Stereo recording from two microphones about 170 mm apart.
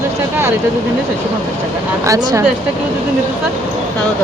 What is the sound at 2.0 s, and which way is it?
Speech, 20° right (ahead or behind).